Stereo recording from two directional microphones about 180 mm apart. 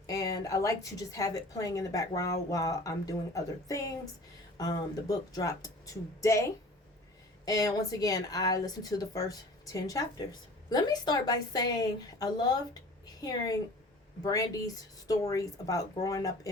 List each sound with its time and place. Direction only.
0.1 s a woman's voice: 20° left (ahead or behind)
7.4 s a woman's voice: 20° left (ahead or behind)